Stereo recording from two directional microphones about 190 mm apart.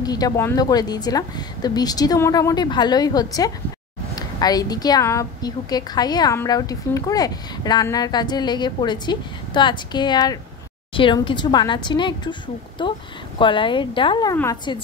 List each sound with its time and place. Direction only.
0.0 s a woman's voice: 20° left (ahead or behind)